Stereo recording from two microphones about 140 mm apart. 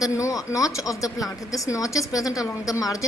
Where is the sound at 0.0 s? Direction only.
25° left (ahead or behind).